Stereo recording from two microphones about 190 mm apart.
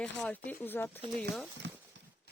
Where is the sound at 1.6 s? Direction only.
65° right (ahead or behind).